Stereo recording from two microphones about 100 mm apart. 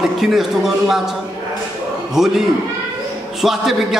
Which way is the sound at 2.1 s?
5° right (ahead or behind).